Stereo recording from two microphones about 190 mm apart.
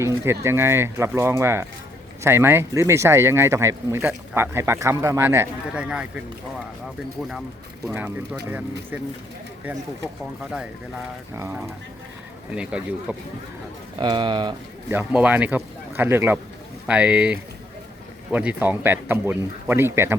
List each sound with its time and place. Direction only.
0.0 s speech: 15° right (ahead or behind)
11.3 s speech: 15° right (ahead or behind)
14.0 s speech: 25° right (ahead or behind)
14.8 s speech: 10° right (ahead or behind)